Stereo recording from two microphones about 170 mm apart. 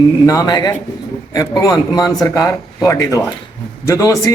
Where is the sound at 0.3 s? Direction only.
20° left (ahead or behind).